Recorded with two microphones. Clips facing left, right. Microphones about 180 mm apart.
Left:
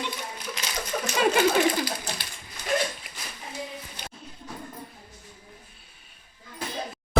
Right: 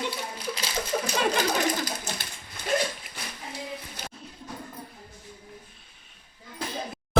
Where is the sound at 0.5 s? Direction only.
30° right (ahead or behind).